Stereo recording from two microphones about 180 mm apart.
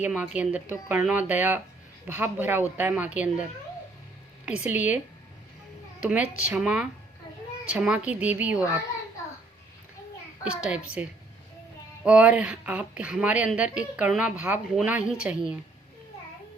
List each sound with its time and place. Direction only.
0.0 s a woman's voice: 10° right (ahead or behind)
4.4 s a woman's voice: 5° right (ahead or behind)
6.0 s a woman's voice: 5° right (ahead or behind)
10.6 s a child's voice: 5° right (ahead or behind)
12.0 s a woman's voice: 5° right (ahead or behind)